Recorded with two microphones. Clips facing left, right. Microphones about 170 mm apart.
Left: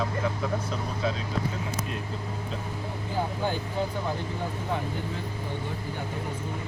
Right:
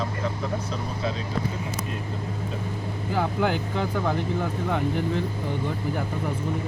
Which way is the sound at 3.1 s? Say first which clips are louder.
Right 5 dB; 75° right (ahead or behind).